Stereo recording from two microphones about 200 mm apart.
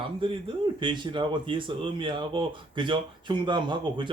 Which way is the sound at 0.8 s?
25° right (ahead or behind).